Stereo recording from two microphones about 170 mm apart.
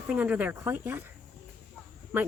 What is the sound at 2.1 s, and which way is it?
Speech, 10° right (ahead or behind).